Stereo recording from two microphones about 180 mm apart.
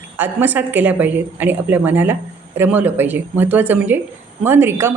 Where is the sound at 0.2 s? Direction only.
10° right (ahead or behind).